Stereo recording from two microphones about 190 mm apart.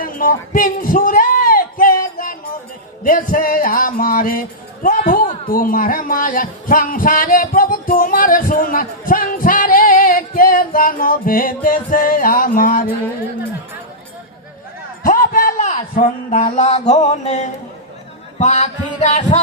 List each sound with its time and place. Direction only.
0.0 s a sound: 45° left (ahead or behind)
3.0 s music: 45° left (ahead or behind)
15.0 s speech: 45° left (ahead or behind)
18.3 s music: 40° left (ahead or behind)